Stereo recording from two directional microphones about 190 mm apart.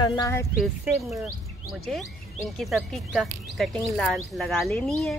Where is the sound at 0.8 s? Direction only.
Centre (ahead or behind).